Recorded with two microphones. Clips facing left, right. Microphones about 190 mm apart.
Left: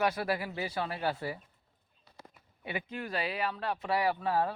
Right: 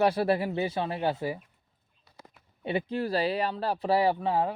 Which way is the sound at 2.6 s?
30° right (ahead or behind).